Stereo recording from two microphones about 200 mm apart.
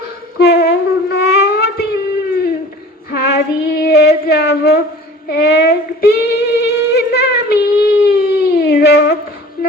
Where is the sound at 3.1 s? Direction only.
55° left (ahead or behind).